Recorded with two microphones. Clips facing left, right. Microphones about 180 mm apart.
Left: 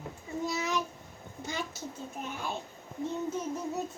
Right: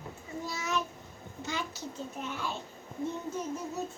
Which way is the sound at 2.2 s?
45° left (ahead or behind).